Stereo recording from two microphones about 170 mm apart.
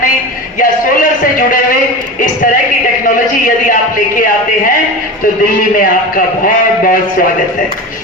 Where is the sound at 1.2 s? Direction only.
55° left (ahead or behind).